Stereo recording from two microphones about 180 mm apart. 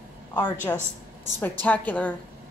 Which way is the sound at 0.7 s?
15° left (ahead or behind).